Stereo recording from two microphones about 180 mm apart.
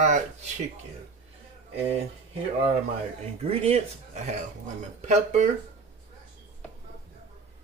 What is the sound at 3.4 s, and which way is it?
Speech, 35° right (ahead or behind).